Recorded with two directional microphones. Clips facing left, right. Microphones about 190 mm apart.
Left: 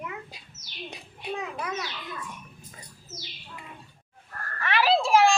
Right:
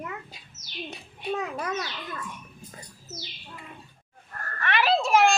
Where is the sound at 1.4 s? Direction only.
40° right (ahead or behind).